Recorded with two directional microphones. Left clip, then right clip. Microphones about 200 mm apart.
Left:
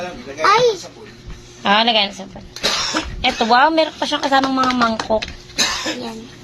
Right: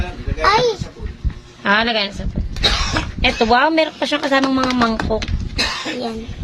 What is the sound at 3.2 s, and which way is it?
Speech, 15° right (ahead or behind).